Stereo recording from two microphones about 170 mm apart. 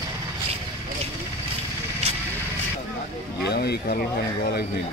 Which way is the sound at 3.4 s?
75° left (ahead or behind).